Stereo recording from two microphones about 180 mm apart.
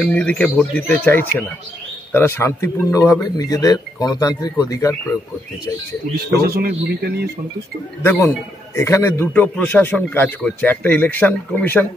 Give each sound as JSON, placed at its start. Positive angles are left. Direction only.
{"t": 0.0, "sound": "a man's voice", "side_deg": 5}
{"t": 6.4, "sound": "a man's voice", "side_deg": -60}
{"t": 8.0, "sound": "a man's voice", "side_deg": 15}